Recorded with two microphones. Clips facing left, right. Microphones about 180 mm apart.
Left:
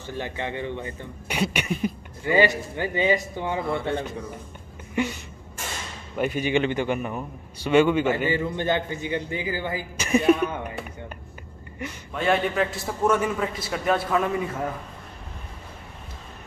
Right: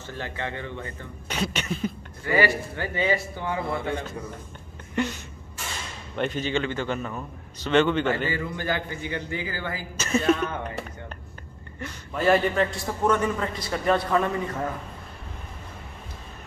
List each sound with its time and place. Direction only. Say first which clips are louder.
0.0 s a man's voice: left 2 dB; 15° left (ahead or behind)
5.0 s a man's voice: left 1 dB; 10° left (ahead or behind)
6.1 s a man's voice: left 3 dB; 10° left (ahead or behind)
12.1 s a man's voice: right 2 dB; centre (ahead or behind)